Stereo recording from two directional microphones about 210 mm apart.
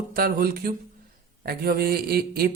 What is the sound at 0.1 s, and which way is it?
Speech, 45° right (ahead or behind).